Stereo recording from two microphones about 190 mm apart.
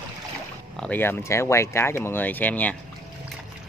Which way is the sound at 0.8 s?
10° left (ahead or behind).